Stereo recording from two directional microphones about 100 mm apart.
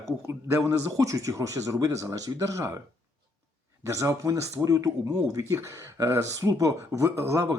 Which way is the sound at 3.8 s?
30° right (ahead or behind).